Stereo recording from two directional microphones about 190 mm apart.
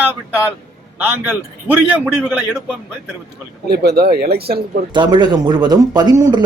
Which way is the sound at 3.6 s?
55° right (ahead or behind).